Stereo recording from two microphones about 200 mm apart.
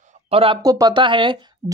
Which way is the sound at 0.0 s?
35° right (ahead or behind).